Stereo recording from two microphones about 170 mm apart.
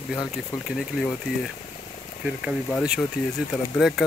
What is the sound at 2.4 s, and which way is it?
Speech, centre (ahead or behind).